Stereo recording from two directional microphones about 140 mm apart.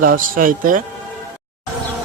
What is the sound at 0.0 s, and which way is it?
Speech, 80° right.